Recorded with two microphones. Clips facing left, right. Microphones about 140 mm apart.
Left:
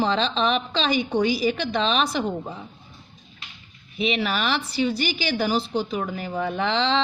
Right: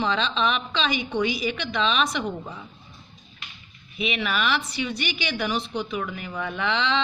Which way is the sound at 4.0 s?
35° left (ahead or behind).